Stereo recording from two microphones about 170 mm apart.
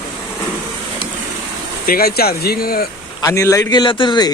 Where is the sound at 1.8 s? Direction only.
60° left (ahead or behind).